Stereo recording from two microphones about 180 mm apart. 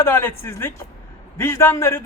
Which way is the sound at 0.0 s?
10° left (ahead or behind).